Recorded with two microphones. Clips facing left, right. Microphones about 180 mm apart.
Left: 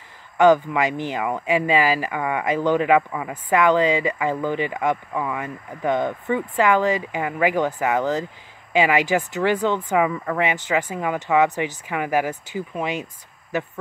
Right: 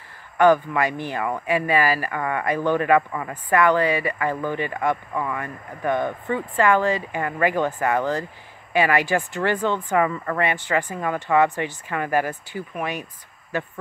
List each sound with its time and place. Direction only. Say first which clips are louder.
0.4 s speech: left 1 dB; 20° left (ahead or behind)